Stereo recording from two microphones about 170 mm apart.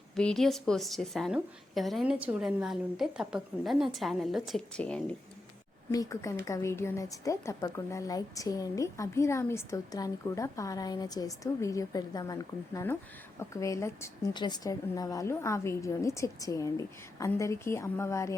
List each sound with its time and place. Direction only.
0.2 s a woman's voice: 5° left (ahead or behind)
5.9 s a woman's voice: 20° left (ahead or behind)